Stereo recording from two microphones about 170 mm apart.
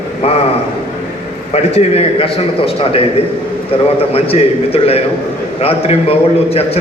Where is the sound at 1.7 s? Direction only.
35° left (ahead or behind).